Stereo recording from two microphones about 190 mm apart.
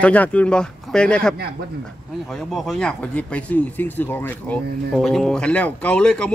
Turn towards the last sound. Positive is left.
turn(degrees=5)  # may be behind; listen again after turning